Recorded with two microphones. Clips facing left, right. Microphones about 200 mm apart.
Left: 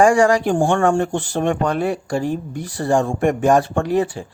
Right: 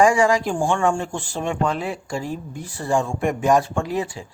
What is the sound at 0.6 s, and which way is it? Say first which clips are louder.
Speech: left 4 dB; 60° left (ahead or behind).